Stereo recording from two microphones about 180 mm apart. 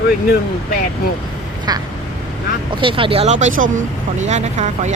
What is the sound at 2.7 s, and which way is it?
Speech, 30° right (ahead or behind).